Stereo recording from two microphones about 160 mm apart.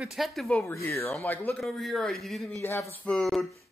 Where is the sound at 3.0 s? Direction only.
5° left (ahead or behind).